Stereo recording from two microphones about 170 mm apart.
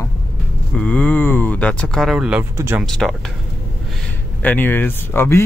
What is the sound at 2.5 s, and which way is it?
Speech, 15° right (ahead or behind).